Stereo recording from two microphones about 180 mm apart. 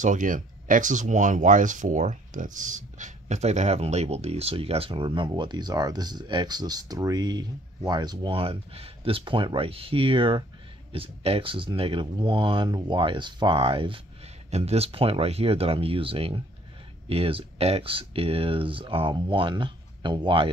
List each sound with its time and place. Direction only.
0.0 s speech: 45° right (ahead or behind); by 20.4 s 25° right (ahead or behind)